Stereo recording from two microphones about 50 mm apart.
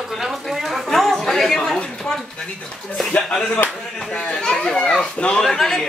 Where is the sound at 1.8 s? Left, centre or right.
Centre.